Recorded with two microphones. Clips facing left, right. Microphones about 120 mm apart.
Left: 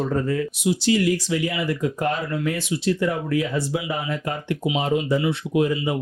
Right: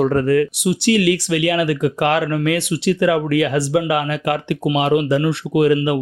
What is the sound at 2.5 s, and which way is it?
Speech, 70° right (ahead or behind).